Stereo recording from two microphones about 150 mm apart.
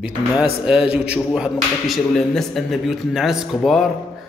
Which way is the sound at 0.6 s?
5° right (ahead or behind).